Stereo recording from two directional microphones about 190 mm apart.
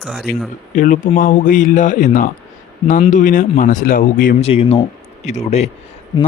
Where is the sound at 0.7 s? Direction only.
40° left (ahead or behind).